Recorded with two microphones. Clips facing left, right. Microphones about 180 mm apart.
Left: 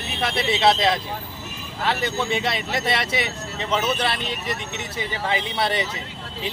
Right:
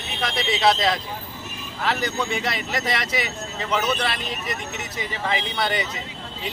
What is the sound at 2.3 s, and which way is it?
Speech, 25° left (ahead or behind).